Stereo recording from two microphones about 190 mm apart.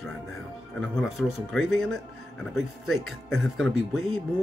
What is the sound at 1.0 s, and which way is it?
Speech, centre (ahead or behind).